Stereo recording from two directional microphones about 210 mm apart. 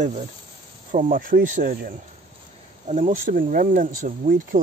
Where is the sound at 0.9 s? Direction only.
40° right (ahead or behind).